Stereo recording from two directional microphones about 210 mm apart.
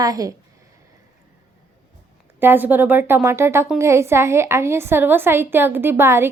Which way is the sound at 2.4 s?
10° right (ahead or behind).